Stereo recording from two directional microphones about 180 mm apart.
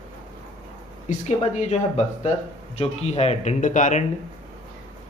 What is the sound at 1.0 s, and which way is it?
Speech, 40° left (ahead or behind).